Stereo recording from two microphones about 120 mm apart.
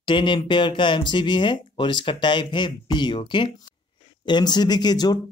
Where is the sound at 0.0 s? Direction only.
40° left (ahead or behind).